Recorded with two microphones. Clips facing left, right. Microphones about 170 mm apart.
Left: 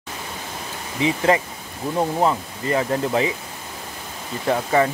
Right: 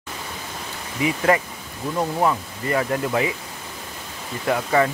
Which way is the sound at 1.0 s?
25° left (ahead or behind).